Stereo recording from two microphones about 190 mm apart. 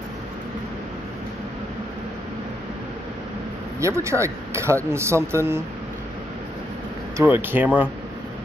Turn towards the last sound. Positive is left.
turn(degrees=-10)  # may be behind; listen again after turning